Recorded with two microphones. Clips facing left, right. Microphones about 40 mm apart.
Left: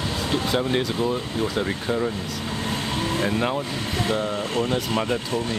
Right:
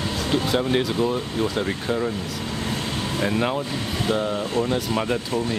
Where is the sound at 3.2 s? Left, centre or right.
Centre.